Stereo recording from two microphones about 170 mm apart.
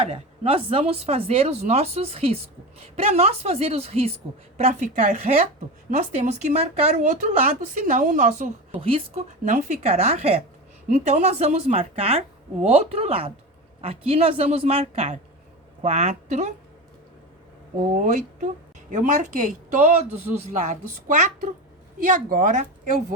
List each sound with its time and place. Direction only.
0.0 s speech: 35° right (ahead or behind)
17.9 s speech: 50° right (ahead or behind)
20.1 s speech: 10° right (ahead or behind)
20.6 s speech: 45° right (ahead or behind)